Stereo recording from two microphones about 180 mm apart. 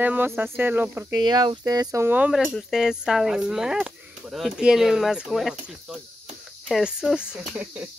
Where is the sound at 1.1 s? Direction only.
25° right (ahead or behind).